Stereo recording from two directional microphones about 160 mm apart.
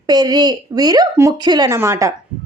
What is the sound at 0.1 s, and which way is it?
Speech, 25° right (ahead or behind).